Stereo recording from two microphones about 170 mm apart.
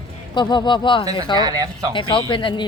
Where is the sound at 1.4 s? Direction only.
20° right (ahead or behind).